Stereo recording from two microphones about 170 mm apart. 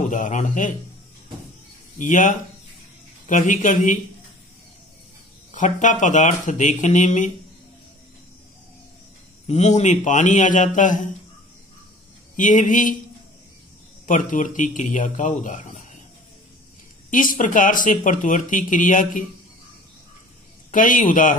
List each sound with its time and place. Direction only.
0.1 s speech: 50° left (ahead or behind)
2.0 s speech: 50° left (ahead or behind)
5.5 s speech: 45° left (ahead or behind)
9.5 s speech: 40° left (ahead or behind)
12.4 s speech: 50° left (ahead or behind)
14.0 s speech: 50° left (ahead or behind)
17.1 s speech: 50° left (ahead or behind)
20.7 s speech: 50° left (ahead or behind)